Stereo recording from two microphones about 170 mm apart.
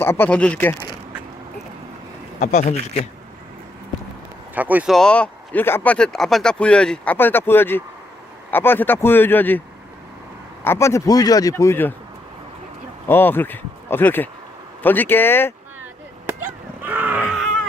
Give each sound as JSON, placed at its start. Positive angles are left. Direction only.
{"t": 0.0, "sound": "speech", "side_deg": 10}
{"t": 2.4, "sound": "speech", "side_deg": 40}
{"t": 4.5, "sound": "speech", "side_deg": -10}
{"t": 4.9, "sound": "speech", "side_deg": 5}
{"t": 10.6, "sound": "speech", "side_deg": 15}
{"t": 13.1, "sound": "speech", "side_deg": 10}
{"t": 16.2, "sound": "a sound", "side_deg": -15}